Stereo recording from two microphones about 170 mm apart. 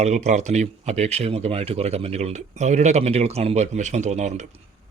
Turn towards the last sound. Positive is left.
turn(degrees=-45)  # may be behind; listen again after turning